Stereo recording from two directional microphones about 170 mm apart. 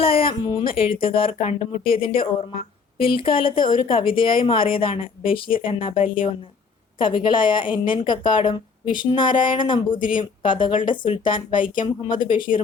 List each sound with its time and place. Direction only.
0.0 s a woman's voice: 35° left (ahead or behind)
11.5 s speech: 50° left (ahead or behind)